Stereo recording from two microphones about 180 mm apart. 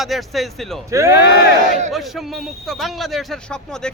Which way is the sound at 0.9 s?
15° right (ahead or behind).